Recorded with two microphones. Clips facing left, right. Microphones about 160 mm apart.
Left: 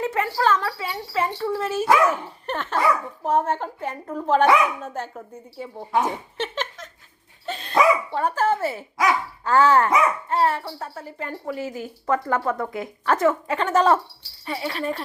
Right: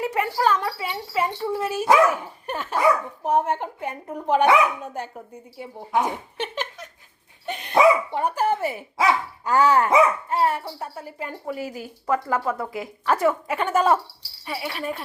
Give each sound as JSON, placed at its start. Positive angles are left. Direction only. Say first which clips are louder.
{"t": 0.0, "sound": "speech", "louder": "even", "side_deg": -15}